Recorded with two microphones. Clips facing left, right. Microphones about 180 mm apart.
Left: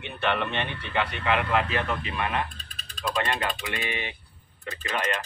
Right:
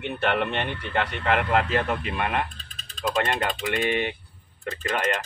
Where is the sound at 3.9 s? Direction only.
55° right (ahead or behind).